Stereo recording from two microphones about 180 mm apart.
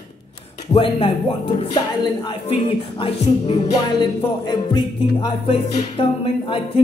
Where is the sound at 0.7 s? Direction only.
30° left (ahead or behind).